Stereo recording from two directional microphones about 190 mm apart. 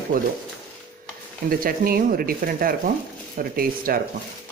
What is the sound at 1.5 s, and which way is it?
Speech, 50° right (ahead or behind).